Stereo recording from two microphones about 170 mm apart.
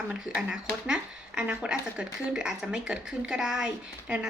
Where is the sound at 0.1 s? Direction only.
5° right (ahead or behind).